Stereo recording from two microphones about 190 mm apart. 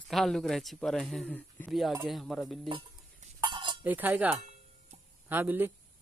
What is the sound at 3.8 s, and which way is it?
Speech, 10° right (ahead or behind).